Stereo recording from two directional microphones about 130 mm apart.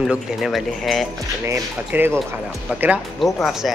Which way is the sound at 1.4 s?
15° right (ahead or behind).